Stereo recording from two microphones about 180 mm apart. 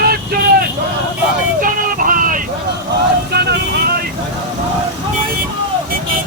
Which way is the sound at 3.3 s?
65° right (ahead or behind).